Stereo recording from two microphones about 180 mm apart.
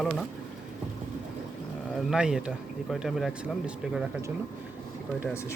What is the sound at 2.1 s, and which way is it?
Speech, 5° right (ahead or behind).